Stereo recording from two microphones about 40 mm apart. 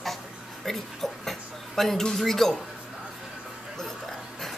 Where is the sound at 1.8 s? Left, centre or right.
Centre.